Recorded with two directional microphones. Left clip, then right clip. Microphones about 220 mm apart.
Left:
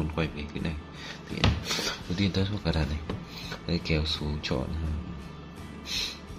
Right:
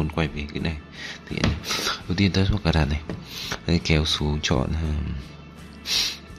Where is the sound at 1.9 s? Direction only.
30° right (ahead or behind).